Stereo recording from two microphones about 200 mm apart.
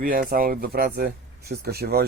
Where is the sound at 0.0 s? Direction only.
45° right (ahead or behind).